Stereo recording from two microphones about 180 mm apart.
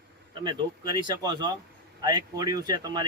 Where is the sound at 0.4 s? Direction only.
25° right (ahead or behind).